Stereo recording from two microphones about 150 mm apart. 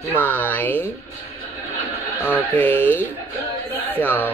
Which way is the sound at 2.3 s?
15° left (ahead or behind).